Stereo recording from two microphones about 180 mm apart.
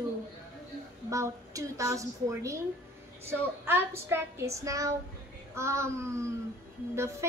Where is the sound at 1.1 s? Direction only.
15° right (ahead or behind).